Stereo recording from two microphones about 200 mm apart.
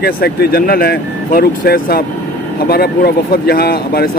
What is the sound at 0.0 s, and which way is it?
Speech, 50° left (ahead or behind).